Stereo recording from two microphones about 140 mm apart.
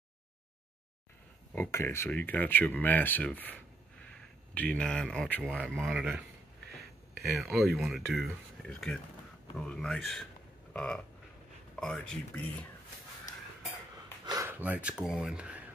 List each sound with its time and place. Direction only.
1.5 s speech: 15° left (ahead or behind); by 6.2 s centre (ahead or behind)
7.3 s speech: centre (ahead or behind)
10.7 s a sound: 5° left (ahead or behind)
11.7 s speech: 5° left (ahead or behind)
14.2 s a sound: 25° right (ahead or behind)
14.5 s speech: 10° right (ahead or behind)